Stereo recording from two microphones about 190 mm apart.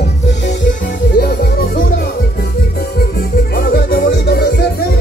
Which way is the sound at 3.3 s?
60° left (ahead or behind).